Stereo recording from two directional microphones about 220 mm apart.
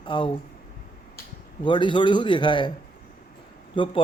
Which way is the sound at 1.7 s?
20° left (ahead or behind).